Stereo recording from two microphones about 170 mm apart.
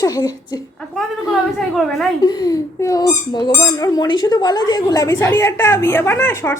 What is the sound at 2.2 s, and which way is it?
Speech, 25° left (ahead or behind).